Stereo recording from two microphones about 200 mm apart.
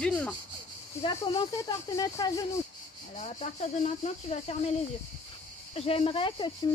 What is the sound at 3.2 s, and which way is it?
Speech, 35° left (ahead or behind).